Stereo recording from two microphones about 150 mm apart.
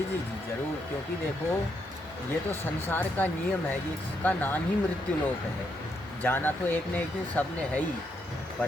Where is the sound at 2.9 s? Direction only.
15° left (ahead or behind).